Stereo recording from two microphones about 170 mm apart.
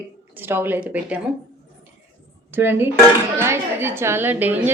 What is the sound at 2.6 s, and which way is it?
A woman's voice, 10° right (ahead or behind).